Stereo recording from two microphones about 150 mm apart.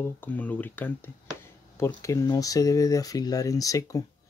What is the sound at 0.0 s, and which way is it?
Speech, 10° left (ahead or behind).